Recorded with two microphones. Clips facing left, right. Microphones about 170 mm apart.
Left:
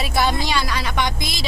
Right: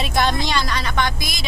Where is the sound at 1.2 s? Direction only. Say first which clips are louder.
Left 2 dB; 25° left (ahead or behind).